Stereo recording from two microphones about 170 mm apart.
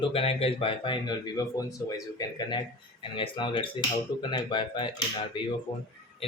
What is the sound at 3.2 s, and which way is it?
Speech, 30° left (ahead or behind).